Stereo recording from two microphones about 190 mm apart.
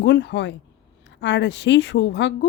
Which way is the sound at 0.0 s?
65° left (ahead or behind).